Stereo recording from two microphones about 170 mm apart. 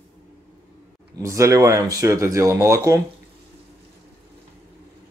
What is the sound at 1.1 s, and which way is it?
Speech, 20° right (ahead or behind).